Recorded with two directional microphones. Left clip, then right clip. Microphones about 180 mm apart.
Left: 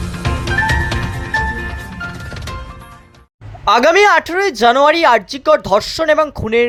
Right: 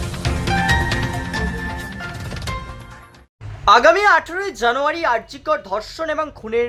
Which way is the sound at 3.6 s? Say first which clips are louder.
Left 2 dB; 40° left (ahead or behind).